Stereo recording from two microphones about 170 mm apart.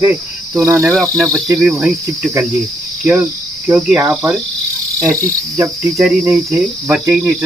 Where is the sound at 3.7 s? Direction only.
Centre (ahead or behind).